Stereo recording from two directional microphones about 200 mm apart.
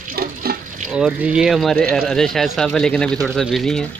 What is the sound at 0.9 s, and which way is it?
Speech, 5° right (ahead or behind).